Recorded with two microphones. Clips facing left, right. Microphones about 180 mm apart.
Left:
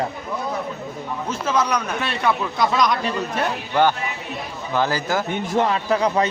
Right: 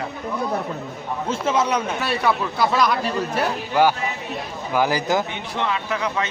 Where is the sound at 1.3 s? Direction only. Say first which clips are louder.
Right 1 dB; 25° right (ahead or behind).